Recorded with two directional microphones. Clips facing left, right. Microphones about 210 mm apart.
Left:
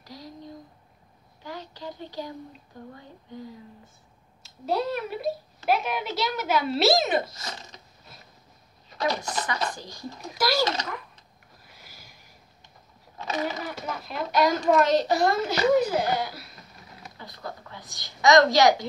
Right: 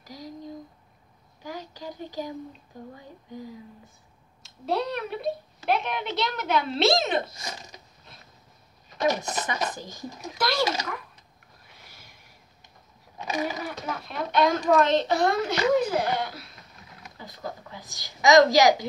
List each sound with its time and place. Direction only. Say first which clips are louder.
1.4 s a sound: right 1 dB; 15° right (ahead or behind)
2.7 s a woman's voice: right 1 dB; 15° right (ahead or behind)
4.4 s speech: even; centre (ahead or behind)
8.9 s speech: right 2 dB; 20° right (ahead or behind)
10.3 s speech: left 2 dB; 5° left (ahead or behind)
10.6 s a woman's voice: even; 10° right (ahead or behind)
11.6 s sniff: left 1 dB; centre (ahead or behind)
13.2 s a sound: even; 15° right (ahead or behind)
13.7 s speech: even; centre (ahead or behind)
17.2 s a woman's voice: right 2 dB; 15° right (ahead or behind)